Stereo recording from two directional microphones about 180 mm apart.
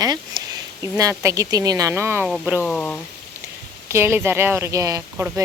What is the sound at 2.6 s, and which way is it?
Speech, 5° left (ahead or behind).